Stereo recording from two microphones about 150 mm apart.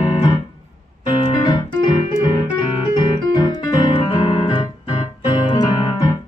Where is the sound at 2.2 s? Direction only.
30° left (ahead or behind).